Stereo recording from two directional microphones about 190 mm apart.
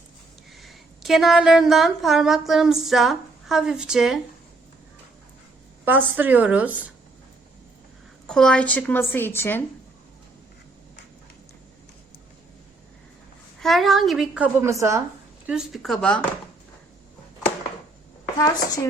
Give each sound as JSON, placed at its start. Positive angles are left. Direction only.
{"t": 0.5, "sound": "a woman's voice", "side_deg": 0}
{"t": 6.1, "sound": "speech", "side_deg": -10}
{"t": 8.3, "sound": "a woman's voice", "side_deg": 5}
{"t": 13.6, "sound": "a woman's voice", "side_deg": 0}
{"t": 15.4, "sound": "a woman's voice", "side_deg": -5}
{"t": 18.3, "sound": "a woman's voice", "side_deg": 20}